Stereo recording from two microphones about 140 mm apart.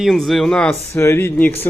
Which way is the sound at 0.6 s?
20° left (ahead or behind).